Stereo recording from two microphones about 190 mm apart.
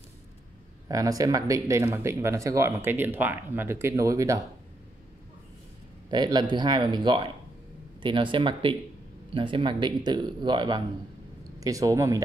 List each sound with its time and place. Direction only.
0.8 s speech: 20° right (ahead or behind)
6.0 s speech: 25° right (ahead or behind)